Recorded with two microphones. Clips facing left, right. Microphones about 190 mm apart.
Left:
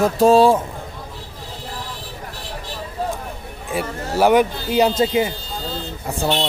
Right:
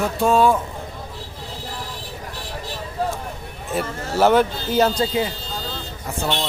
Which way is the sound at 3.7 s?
10° left (ahead or behind).